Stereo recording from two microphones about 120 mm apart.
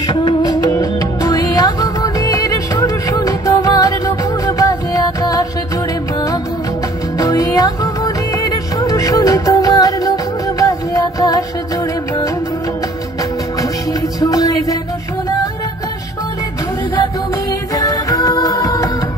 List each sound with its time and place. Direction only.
0.0 s music: 35° left (ahead or behind)
7.2 s music: 30° left (ahead or behind)
14.2 s music: 30° left (ahead or behind)
17.5 s music: 30° left (ahead or behind)